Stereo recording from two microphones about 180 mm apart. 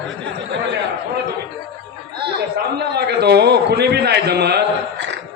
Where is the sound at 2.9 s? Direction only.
65° right (ahead or behind).